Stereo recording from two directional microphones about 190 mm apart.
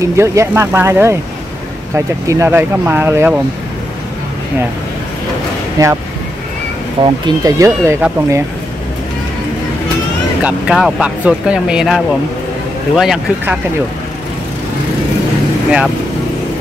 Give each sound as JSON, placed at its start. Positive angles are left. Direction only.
{"t": 0.0, "sound": "speech", "side_deg": -15}
{"t": 5.8, "sound": "speech", "side_deg": -20}
{"t": 7.0, "sound": "speech", "side_deg": -20}
{"t": 10.4, "sound": "speech", "side_deg": -5}